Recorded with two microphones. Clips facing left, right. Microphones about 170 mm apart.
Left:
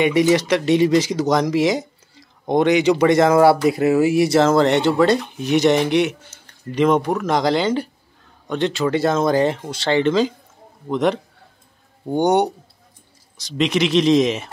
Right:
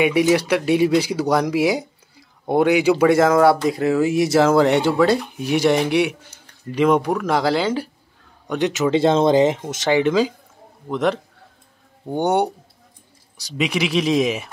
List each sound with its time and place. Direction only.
0.0 s speech: 10° right (ahead or behind)
13.6 s speech: 5° right (ahead or behind)